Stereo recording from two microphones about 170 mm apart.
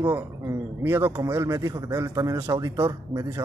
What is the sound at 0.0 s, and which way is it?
Speech, 15° right (ahead or behind).